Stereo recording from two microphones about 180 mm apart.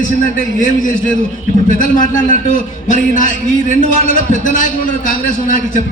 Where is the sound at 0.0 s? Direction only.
50° left (ahead or behind).